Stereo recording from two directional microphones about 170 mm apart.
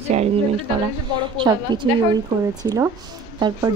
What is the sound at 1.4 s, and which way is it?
A woman's voice, 25° right (ahead or behind).